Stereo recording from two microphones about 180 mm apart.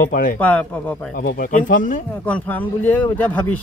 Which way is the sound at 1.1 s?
50° left (ahead or behind).